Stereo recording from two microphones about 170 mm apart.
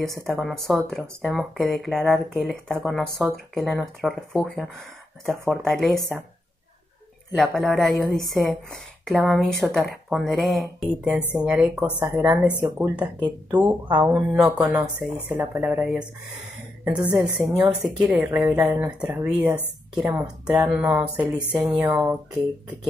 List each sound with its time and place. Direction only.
0.0 s speech: centre (ahead or behind)
7.3 s speech: centre (ahead or behind)
13.5 s speech: 25° right (ahead or behind)
13.8 s speech: 10° right (ahead or behind)
17.4 s speech: 5° right (ahead or behind)